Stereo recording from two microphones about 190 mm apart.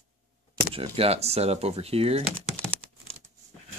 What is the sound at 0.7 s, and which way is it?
Speech, 30° right (ahead or behind).